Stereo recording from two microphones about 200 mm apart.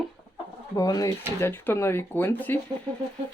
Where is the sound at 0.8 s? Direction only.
20° left (ahead or behind).